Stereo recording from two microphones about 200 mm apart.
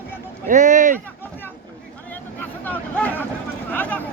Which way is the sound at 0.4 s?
40° right (ahead or behind).